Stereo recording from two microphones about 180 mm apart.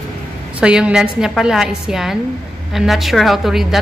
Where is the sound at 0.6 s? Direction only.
5° right (ahead or behind).